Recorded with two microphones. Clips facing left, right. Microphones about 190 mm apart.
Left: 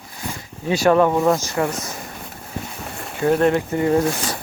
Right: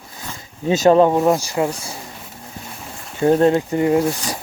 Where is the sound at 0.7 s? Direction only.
25° right (ahead or behind).